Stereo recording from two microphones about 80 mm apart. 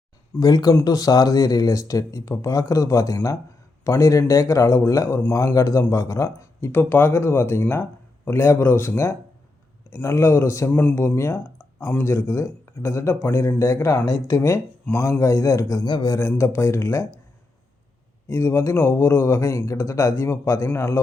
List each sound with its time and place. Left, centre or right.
0.3 s speech: left
6.7 s speech: left
10.7 s speech: left
15.8 s a man's voice: left
16.4 s speech: left
18.3 s speech: left